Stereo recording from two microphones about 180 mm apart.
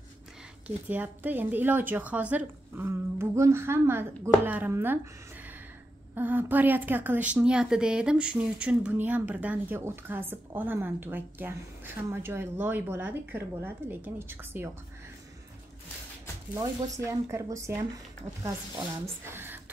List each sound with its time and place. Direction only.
0.7 s speech: 10° right (ahead or behind)
6.1 s speech: 10° right (ahead or behind)
16.5 s speech: 15° right (ahead or behind)
19.3 s a sound: 10° right (ahead or behind)